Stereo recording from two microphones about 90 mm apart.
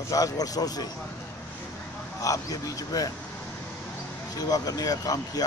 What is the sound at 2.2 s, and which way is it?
Speech, 40° left (ahead or behind).